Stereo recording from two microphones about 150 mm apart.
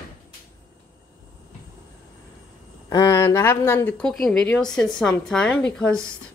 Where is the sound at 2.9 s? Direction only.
20° left (ahead or behind).